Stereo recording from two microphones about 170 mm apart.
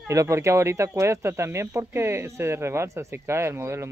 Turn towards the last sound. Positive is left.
turn(degrees=-15)  # may be behind; listen again after turning